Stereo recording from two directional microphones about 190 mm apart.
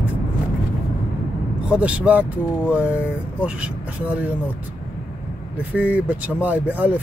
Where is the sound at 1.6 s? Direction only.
5° right (ahead or behind).